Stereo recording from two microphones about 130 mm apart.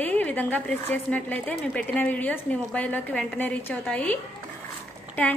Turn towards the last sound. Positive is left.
turn(degrees=15)  # may be behind; listen again after turning